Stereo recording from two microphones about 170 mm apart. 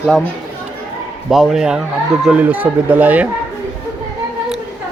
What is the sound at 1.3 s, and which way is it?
Speech, 5° right (ahead or behind).